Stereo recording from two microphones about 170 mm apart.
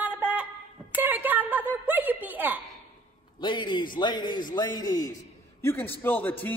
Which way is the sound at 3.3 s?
30° left (ahead or behind).